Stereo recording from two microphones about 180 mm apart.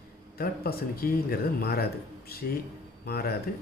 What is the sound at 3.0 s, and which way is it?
Speech, 60° left (ahead or behind).